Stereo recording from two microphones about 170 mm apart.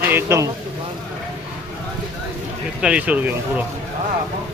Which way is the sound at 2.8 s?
5° right (ahead or behind).